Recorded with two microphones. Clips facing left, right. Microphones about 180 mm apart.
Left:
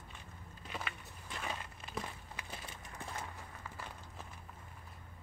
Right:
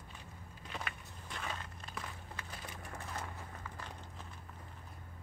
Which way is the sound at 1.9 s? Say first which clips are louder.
Left 3 dB; 20° left (ahead or behind).